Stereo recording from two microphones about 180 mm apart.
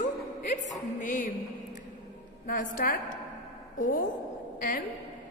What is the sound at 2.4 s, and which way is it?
Speech, 50° left (ahead or behind).